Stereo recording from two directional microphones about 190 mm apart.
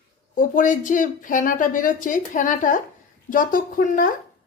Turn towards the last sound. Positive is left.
turn(degrees=45)  # may be behind; listen again after turning